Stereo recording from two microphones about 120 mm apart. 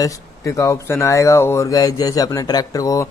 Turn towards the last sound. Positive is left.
turn(degrees=30)  # may be behind; listen again after turning